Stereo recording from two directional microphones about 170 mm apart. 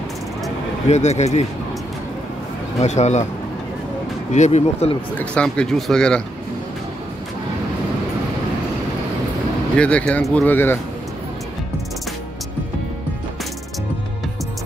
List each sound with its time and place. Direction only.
0.8 s speech: 40° left (ahead or behind)
2.8 s speech: 40° left (ahead or behind)
4.3 s speech: 45° left (ahead or behind)
5.1 s speech: 5° left (ahead or behind)
9.8 s speech: 5° left (ahead or behind)